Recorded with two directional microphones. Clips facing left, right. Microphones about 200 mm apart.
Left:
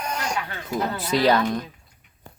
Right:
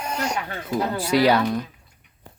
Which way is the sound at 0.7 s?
10° right (ahead or behind).